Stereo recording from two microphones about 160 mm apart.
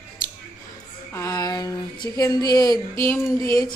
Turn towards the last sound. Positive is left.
turn(degrees=20)  # may be behind; listen again after turning